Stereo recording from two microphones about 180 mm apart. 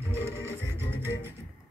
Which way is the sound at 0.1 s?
15° right (ahead or behind).